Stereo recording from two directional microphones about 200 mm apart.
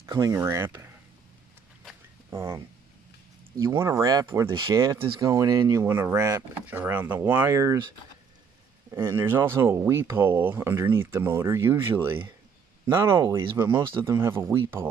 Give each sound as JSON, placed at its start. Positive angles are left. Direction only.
{"t": 0.0, "sound": "speech", "side_deg": -15}
{"t": 2.3, "sound": "speech", "side_deg": -15}
{"t": 8.9, "sound": "speech", "side_deg": -10}